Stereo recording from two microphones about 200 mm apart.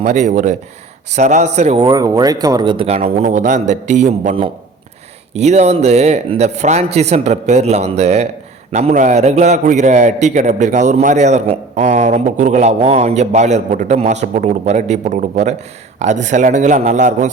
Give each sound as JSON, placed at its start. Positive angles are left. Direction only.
{"t": 0.0, "sound": "a man's voice", "side_deg": -35}
{"t": 1.8, "sound": "a man's voice", "side_deg": -20}